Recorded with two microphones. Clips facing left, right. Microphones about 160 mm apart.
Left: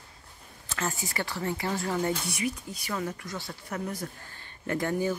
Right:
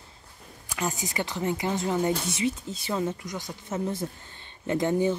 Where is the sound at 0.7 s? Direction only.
15° right (ahead or behind).